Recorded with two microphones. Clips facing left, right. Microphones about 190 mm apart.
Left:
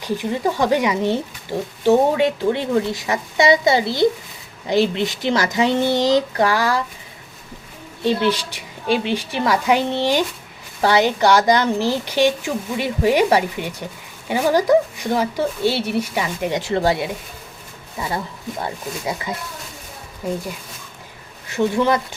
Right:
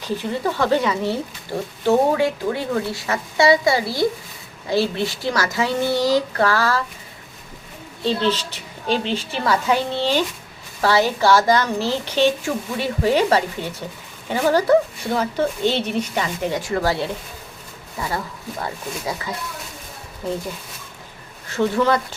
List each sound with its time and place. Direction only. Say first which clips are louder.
0.0 s a woman's voice: left 2 dB; 15° left (ahead or behind)
8.0 s a woman's voice: left 2 dB; 15° left (ahead or behind)
21.5 s speech: left 1 dB; 20° left (ahead or behind)